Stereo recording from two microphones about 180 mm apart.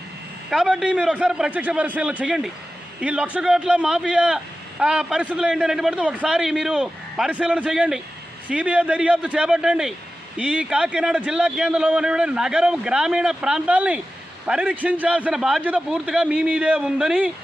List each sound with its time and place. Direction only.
0.5 s a man's voice: 5° right (ahead or behind)